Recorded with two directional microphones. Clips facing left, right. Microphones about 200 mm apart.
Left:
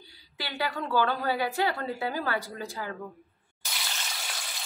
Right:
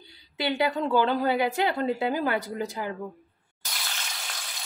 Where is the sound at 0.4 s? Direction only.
20° right (ahead or behind).